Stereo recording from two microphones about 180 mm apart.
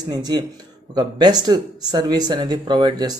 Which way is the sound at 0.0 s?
20° right (ahead or behind).